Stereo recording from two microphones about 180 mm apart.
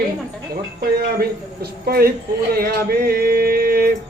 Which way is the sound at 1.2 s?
60° right (ahead or behind).